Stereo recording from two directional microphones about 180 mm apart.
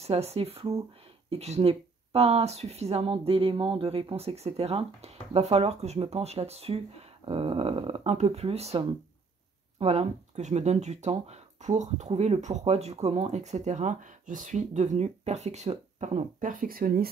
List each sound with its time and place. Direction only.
0.0 s speech: 35° right (ahead or behind); by 17.1 s 55° right (ahead or behind)